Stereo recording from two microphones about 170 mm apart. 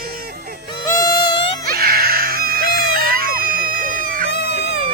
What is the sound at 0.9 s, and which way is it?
Music, 25° left (ahead or behind).